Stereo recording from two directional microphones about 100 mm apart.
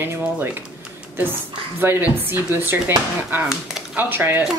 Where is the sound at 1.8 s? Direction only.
20° right (ahead or behind).